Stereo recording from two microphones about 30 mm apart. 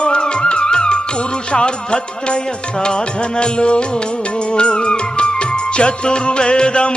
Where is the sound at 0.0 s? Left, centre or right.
Left.